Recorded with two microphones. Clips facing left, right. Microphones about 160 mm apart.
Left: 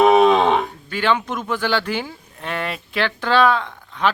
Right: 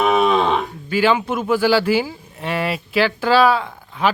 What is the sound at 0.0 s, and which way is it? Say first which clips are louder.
Livestock: left 4 dB; 30° left (ahead or behind).